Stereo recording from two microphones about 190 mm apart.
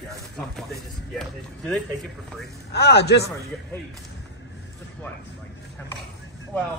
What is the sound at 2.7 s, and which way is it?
Speech, 60° left (ahead or behind).